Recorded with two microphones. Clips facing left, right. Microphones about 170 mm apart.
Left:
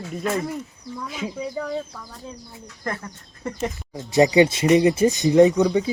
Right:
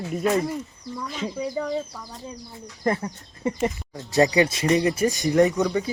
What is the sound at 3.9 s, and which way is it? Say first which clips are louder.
Speech: left 4 dB; 15° left (ahead or behind).